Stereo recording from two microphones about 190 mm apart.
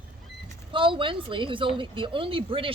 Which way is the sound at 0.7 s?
25° right (ahead or behind).